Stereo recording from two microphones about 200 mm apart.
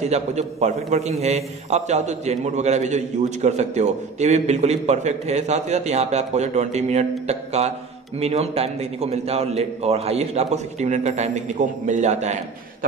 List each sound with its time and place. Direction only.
0.0 s a man's voice: 35° right (ahead or behind)